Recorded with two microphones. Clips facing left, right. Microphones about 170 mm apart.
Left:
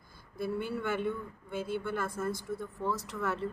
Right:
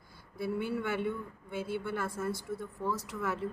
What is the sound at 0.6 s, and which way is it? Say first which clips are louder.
Speech: right 1 dB; 5° right (ahead or behind).